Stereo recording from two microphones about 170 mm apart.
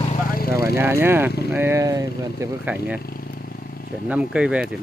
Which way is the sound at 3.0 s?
60° left (ahead or behind).